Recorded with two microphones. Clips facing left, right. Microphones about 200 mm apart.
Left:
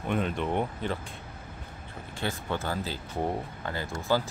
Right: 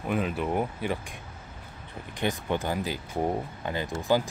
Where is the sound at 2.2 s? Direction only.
15° right (ahead or behind).